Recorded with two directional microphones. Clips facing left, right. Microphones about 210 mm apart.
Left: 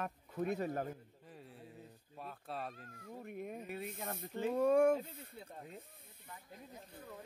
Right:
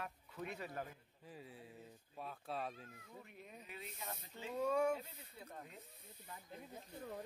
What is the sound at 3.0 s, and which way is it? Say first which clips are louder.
Speech: left 11 dB; 55° left (ahead or behind).